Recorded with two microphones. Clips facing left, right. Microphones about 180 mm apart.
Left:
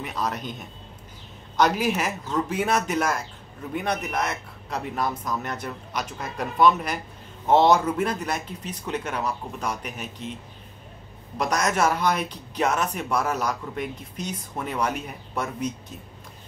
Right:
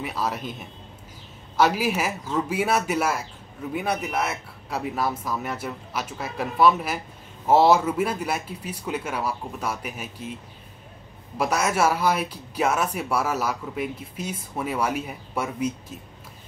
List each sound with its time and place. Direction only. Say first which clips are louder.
0.0 s speech: right 1 dB; 5° right (ahead or behind)
11.3 s speech: right 1 dB; 5° right (ahead or behind)